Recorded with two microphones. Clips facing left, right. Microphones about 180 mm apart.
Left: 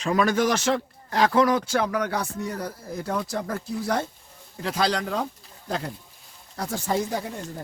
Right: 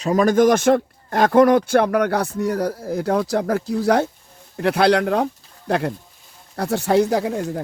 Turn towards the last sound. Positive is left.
turn(degrees=-70)  # may be behind; listen again after turning